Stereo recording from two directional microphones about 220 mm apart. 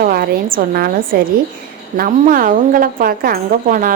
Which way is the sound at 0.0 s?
40° right (ahead or behind).